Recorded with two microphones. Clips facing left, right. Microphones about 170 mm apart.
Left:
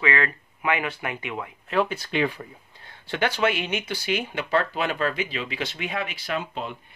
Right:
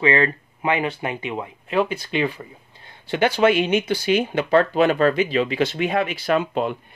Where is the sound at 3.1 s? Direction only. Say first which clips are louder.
Right 6 dB; 20° right (ahead or behind).